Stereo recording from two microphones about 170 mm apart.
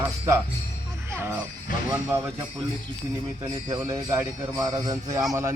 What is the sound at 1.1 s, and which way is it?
Music, 15° right (ahead or behind).